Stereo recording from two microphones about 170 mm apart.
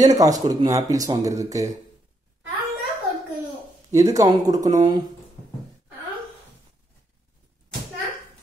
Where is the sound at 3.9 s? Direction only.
20° right (ahead or behind).